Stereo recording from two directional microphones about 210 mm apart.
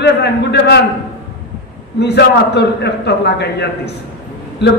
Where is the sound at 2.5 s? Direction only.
50° left (ahead or behind).